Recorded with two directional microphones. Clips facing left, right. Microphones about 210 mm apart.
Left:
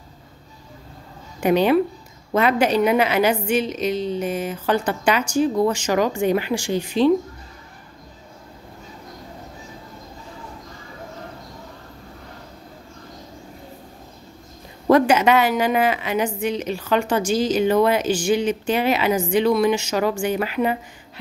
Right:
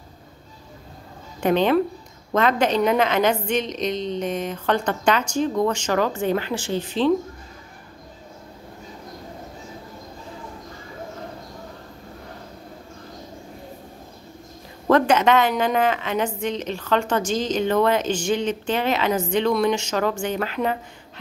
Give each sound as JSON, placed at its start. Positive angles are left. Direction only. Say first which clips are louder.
{"t": 1.4, "sound": "a woman's voice", "louder": "left 2 dB", "side_deg": 10}
{"t": 14.9, "sound": "a woman's voice", "louder": "left 2 dB", "side_deg": 10}